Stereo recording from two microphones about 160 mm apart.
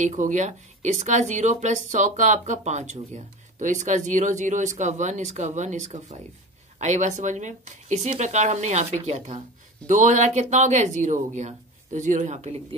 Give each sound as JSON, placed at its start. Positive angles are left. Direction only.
{"t": 0.0, "sound": "speech", "side_deg": -50}